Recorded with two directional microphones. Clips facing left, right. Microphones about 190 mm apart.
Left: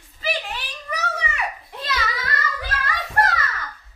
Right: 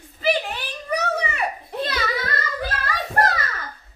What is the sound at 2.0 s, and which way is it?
Child singing, 35° right (ahead or behind).